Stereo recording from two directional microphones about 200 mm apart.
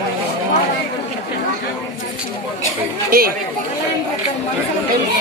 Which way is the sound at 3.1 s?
50° right (ahead or behind).